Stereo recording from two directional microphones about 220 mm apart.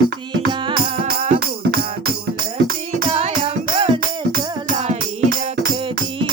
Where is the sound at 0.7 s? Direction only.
35° right (ahead or behind).